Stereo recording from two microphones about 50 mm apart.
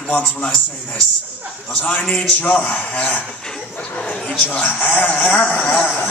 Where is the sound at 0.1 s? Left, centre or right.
Left.